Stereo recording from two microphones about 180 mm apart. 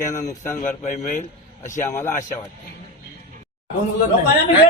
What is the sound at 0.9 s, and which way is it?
Speech, 40° left (ahead or behind).